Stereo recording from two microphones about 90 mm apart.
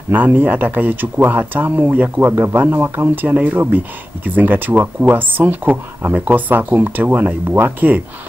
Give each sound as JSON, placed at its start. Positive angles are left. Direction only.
{"t": 0.1, "sound": "speech", "side_deg": -20}